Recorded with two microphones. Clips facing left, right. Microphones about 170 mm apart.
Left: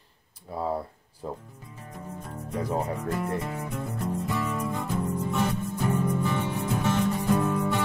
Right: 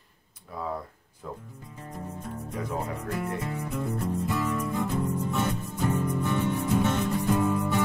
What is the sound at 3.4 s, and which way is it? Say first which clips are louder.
Music: right 1 dB; centre (ahead or behind).